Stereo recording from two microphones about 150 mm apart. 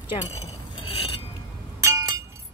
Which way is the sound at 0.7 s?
40° left (ahead or behind).